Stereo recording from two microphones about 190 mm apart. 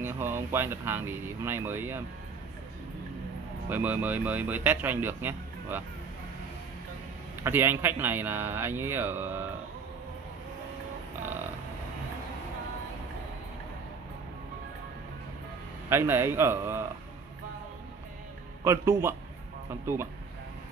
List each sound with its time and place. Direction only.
0.0 s a man's voice: 10° right (ahead or behind)
3.6 s a man's voice: 10° right (ahead or behind)
7.4 s a man's voice: 10° right (ahead or behind)
15.9 s a man's voice: 10° right (ahead or behind)
18.6 s a man's voice: 15° right (ahead or behind)